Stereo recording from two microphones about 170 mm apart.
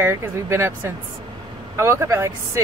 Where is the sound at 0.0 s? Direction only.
15° right (ahead or behind).